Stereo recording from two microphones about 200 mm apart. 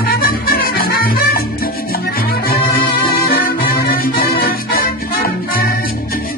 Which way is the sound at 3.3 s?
50° left (ahead or behind).